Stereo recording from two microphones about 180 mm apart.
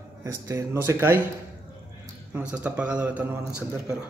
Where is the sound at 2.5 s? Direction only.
5° right (ahead or behind).